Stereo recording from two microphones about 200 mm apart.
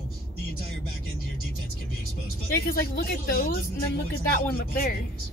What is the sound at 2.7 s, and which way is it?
Speech, 50° left (ahead or behind).